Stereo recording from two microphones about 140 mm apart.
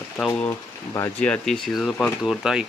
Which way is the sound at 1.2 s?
5° left (ahead or behind).